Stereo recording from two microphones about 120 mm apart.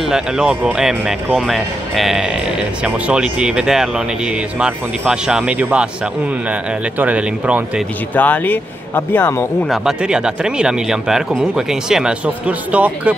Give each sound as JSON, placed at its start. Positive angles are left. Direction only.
{"t": 0.0, "sound": "speech", "side_deg": -5}
{"t": 7.0, "sound": "speech", "side_deg": -10}
{"t": 8.1, "sound": "speech", "side_deg": 15}
{"t": 9.7, "sound": "speech", "side_deg": -5}